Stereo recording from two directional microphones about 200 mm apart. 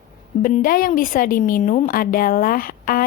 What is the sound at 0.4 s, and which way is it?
A woman's voice, 45° left (ahead or behind).